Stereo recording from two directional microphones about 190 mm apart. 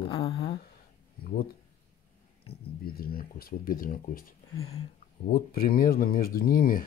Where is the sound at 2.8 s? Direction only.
50° left (ahead or behind).